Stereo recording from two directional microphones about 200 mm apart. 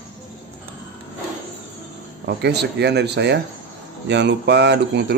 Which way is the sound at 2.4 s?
55° right (ahead or behind).